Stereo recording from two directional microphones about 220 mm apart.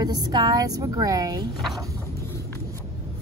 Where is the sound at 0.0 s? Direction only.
20° right (ahead or behind).